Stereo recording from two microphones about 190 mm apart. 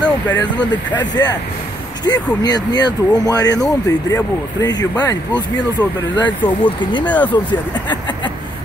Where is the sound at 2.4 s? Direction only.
20° left (ahead or behind).